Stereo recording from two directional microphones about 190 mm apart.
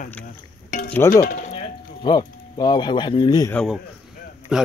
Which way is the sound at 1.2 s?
40° left (ahead or behind).